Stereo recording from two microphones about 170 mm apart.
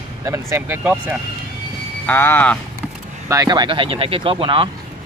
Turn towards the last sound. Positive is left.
turn(degrees=-30)  # may be behind; listen again after turning